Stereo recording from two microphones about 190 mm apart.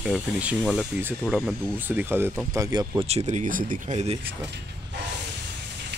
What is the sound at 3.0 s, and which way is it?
Speech, 35° right (ahead or behind).